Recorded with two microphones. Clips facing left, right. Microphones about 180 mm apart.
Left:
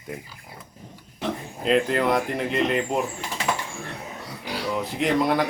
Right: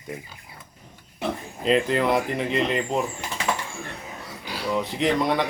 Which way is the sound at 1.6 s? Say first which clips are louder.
Even; centre (ahead or behind).